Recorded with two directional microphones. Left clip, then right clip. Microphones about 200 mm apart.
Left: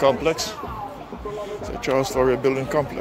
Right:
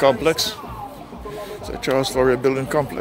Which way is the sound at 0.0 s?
25° right (ahead or behind).